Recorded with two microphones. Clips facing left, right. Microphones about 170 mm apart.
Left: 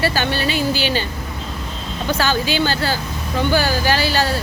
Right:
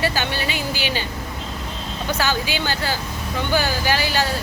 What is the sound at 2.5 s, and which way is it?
Speech, 15° right (ahead or behind).